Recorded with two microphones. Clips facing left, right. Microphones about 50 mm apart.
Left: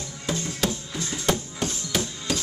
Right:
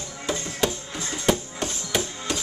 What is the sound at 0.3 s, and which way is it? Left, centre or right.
Music, centre.